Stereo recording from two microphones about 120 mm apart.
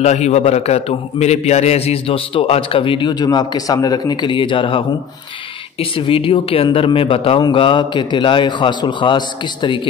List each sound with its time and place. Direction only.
0.0 s a man's voice: 70° left (ahead or behind); by 9.8 s 40° left (ahead or behind)